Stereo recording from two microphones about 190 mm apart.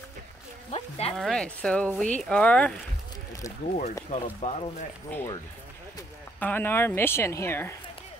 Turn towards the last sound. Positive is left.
turn(degrees=10)  # may be behind; listen again after turning